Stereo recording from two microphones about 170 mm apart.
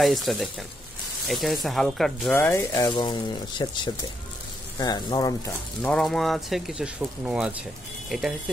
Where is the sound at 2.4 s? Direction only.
15° left (ahead or behind).